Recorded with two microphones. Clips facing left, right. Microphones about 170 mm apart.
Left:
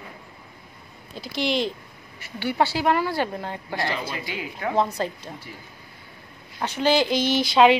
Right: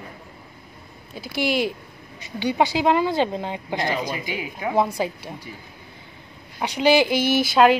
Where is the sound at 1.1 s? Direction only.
10° right (ahead or behind).